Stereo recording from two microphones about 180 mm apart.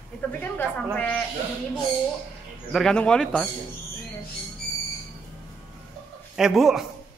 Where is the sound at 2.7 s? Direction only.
5° left (ahead or behind).